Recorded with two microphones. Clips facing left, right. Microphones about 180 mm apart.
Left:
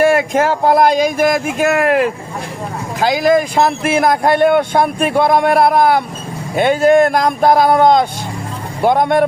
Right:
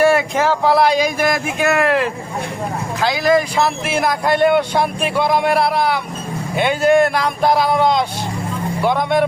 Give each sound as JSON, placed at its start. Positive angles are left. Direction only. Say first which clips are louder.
{"t": 0.0, "sound": "speech", "louder": "left 2 dB", "side_deg": 50}